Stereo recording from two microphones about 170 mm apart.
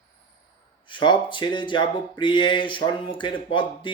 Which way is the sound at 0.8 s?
25° left (ahead or behind).